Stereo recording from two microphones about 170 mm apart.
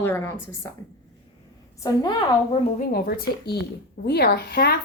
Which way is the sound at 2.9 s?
65° left (ahead or behind).